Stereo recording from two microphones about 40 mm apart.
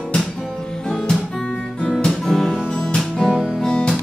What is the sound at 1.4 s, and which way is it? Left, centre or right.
Guitar, left.